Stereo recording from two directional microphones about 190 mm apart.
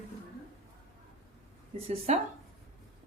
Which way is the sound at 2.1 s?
35° right (ahead or behind).